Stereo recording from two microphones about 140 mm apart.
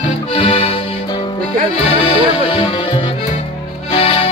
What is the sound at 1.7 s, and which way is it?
Music, 50° left (ahead or behind).